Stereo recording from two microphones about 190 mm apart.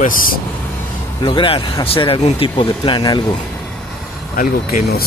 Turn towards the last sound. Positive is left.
turn(degrees=50)  # may be behind; listen again after turning